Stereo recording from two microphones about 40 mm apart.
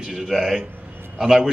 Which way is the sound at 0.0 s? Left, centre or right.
Centre.